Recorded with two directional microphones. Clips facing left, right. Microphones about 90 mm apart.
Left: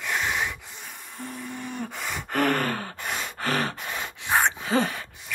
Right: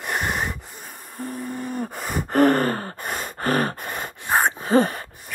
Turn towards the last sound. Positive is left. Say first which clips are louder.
# right 6 dB
turn(degrees=-45)  # may be behind; listen again after turning